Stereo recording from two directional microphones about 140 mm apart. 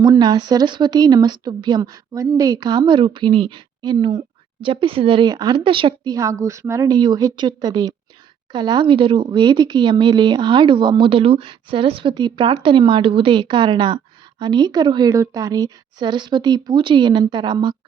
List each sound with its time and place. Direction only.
0.0 s speech: 30° right (ahead or behind)
6.1 s speech: 20° right (ahead or behind)